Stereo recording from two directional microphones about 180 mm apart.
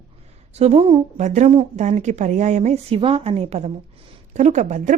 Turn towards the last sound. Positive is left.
turn(degrees=-40)  # may be behind; listen again after turning